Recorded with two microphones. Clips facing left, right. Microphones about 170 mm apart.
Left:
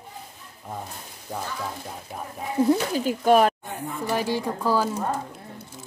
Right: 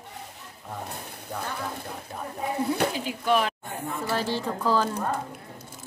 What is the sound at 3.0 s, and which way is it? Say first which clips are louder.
Speech: left 6 dB; 45° left (ahead or behind).